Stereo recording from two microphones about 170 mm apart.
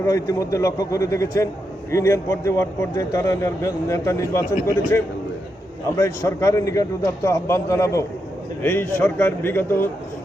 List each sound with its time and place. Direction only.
0.0 s a man's voice: 20° left (ahead or behind)